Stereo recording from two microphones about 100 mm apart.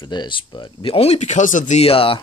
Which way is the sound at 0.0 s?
50° left (ahead or behind).